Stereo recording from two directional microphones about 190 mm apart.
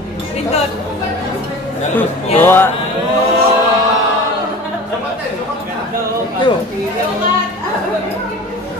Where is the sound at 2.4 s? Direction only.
10° left (ahead or behind).